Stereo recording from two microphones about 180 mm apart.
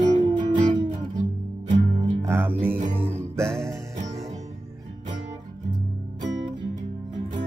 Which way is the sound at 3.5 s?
Centre (ahead or behind).